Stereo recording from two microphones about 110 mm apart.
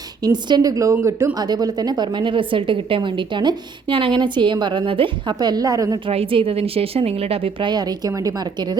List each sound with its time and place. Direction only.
0.2 s a woman's voice: 40° right (ahead or behind)
6.1 s speech: 60° right (ahead or behind)
7.7 s a woman's voice: 40° right (ahead or behind)